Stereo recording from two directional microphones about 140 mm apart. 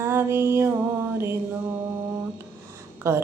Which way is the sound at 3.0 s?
20° right (ahead or behind).